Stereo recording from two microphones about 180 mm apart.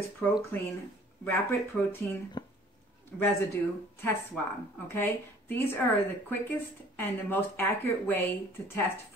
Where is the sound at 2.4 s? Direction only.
25° left (ahead or behind).